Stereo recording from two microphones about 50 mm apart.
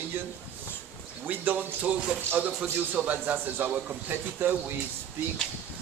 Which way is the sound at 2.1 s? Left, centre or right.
Right.